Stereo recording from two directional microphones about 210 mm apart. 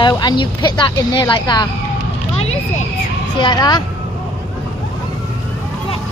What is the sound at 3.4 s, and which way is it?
Speech, 20° left (ahead or behind).